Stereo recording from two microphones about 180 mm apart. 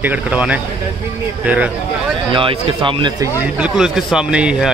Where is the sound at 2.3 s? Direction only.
30° right (ahead or behind).